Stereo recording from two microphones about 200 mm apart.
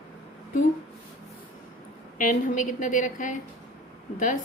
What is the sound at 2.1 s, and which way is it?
A woman's voice, 40° left (ahead or behind).